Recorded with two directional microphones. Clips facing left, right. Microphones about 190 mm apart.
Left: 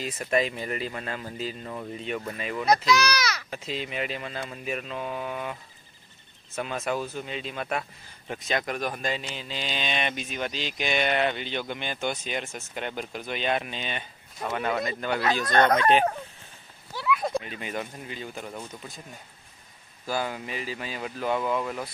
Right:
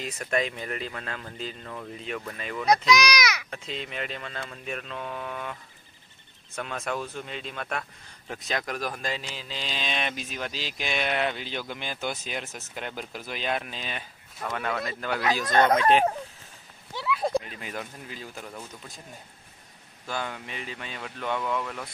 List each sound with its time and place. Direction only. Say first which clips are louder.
0.0 s speech: left 2 dB; centre (ahead or behind)
2.0 s speech: left 3 dB; centre (ahead or behind)
2.9 s speech: right 1 dB; 15° right (ahead or behind)
3.4 s speech: left 3 dB; 5° left (ahead or behind)
16.9 s a sound: left 1 dB; 25° right (ahead or behind)
17.4 s speech: left 3 dB; centre (ahead or behind)
20.1 s speech: left 4 dB; 5° left (ahead or behind)